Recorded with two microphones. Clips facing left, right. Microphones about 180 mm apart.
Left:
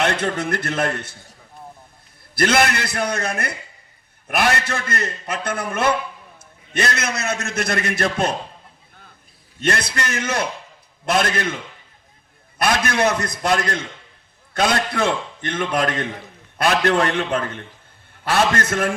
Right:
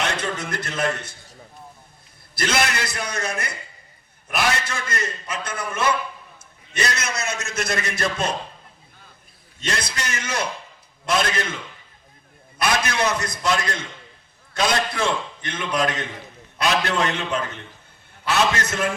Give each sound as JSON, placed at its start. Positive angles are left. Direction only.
{"t": 0.0, "sound": "a man's voice", "side_deg": 55}
{"t": 2.3, "sound": "a man's voice", "side_deg": 55}
{"t": 9.6, "sound": "a man's voice", "side_deg": 55}
{"t": 12.5, "sound": "a man's voice", "side_deg": 55}